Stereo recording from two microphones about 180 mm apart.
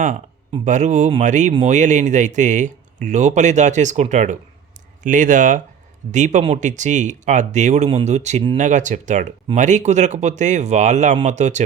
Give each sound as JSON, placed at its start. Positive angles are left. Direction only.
{"t": 0.6, "sound": "speech", "side_deg": -40}